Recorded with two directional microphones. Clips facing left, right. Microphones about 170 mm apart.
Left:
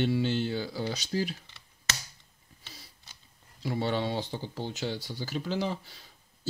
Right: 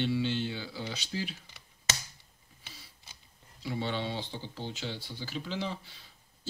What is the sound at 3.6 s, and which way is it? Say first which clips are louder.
Speech: left 4 dB; 40° left (ahead or behind).